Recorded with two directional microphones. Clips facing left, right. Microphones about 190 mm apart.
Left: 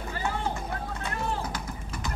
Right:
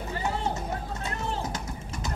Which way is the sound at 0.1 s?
20° right (ahead or behind).